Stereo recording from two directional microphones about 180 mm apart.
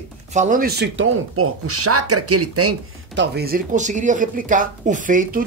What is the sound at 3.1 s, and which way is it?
Speech, 60° right (ahead or behind).